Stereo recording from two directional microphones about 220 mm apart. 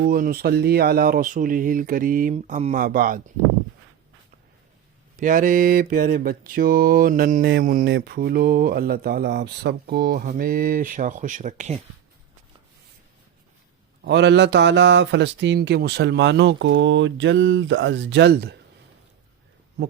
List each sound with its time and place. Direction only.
0.0 s mantra: 40° right (ahead or behind)
5.2 s mantra: 35° right (ahead or behind)
14.0 s speech: 50° right (ahead or behind)